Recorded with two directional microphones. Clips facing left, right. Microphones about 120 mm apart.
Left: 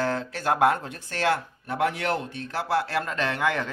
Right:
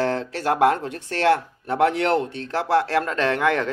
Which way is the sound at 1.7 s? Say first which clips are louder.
Right 6 dB; 65° right (ahead or behind).